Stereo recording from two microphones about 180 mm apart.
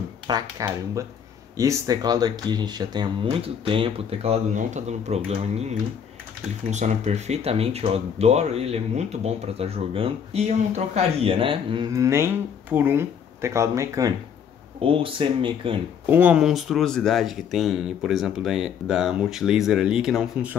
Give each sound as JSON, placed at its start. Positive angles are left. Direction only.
{"t": 0.3, "sound": "speech", "side_deg": -20}
{"t": 14.8, "sound": "speech", "side_deg": -30}
{"t": 16.1, "sound": "speech", "side_deg": -10}